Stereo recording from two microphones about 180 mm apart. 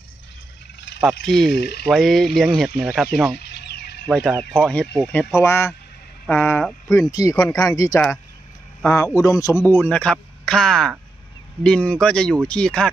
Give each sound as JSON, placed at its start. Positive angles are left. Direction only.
{"t": 1.0, "sound": "speech", "side_deg": 0}
{"t": 1.5, "sound": "speech", "side_deg": 65}
{"t": 1.9, "sound": "speech", "side_deg": 0}
{"t": 3.3, "sound": "a sound", "side_deg": 65}
{"t": 4.1, "sound": "speech", "side_deg": 0}
{"t": 9.8, "sound": "speech", "side_deg": 5}